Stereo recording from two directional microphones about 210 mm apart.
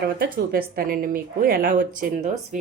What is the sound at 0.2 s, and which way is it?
A woman's voice, 45° right (ahead or behind).